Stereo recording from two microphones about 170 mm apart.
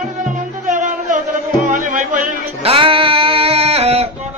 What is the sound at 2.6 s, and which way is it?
Sheep, 35° right (ahead or behind).